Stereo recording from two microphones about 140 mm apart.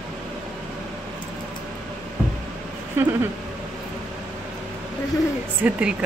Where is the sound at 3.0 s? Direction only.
15° right (ahead or behind).